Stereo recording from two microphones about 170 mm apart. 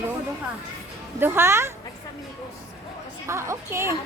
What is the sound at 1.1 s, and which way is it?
Speech, 15° right (ahead or behind).